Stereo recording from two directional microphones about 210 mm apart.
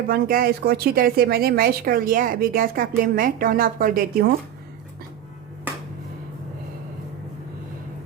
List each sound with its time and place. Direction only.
0.1 s speech: 45° right (ahead or behind)